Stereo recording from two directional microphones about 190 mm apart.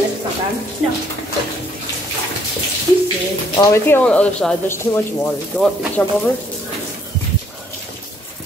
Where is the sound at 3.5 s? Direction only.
15° left (ahead or behind).